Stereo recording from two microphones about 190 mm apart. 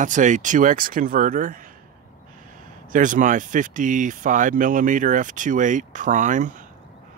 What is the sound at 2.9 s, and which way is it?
Speech, 45° right (ahead or behind).